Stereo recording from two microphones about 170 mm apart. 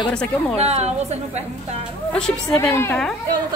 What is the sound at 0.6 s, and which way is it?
Speech, 40° right (ahead or behind).